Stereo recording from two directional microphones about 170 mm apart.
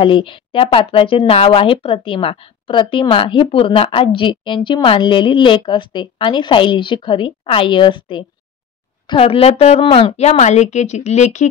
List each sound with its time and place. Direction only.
0.0 s a woman's voice: 30° left (ahead or behind)